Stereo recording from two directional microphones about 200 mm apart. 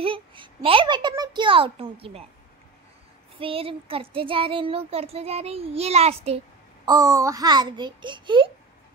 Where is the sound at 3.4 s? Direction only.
25° right (ahead or behind).